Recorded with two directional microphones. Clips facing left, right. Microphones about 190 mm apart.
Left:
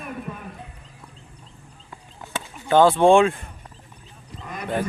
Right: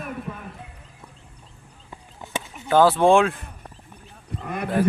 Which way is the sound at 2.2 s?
20° right (ahead or behind).